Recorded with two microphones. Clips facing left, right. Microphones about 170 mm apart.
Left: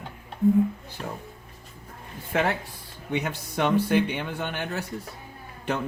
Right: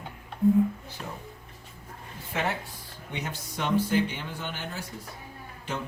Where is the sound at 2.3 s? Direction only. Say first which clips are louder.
Left 5 dB; 60° left (ahead or behind).